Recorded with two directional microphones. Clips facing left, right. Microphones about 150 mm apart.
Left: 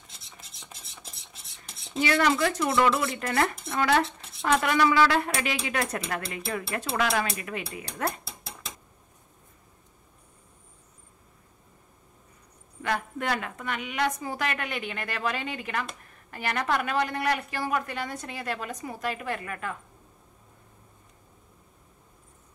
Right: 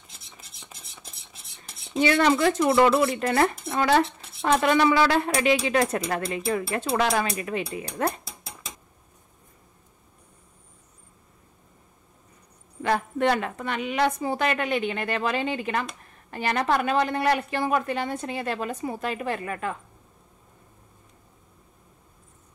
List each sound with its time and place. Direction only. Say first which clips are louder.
0.6 s stir: even; centre (ahead or behind)
2.0 s speech: right 3 dB; 25° right (ahead or behind)
12.8 s speech: right 6 dB; 30° right (ahead or behind)